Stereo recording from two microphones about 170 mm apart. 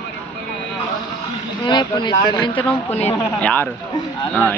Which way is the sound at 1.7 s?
25° left (ahead or behind).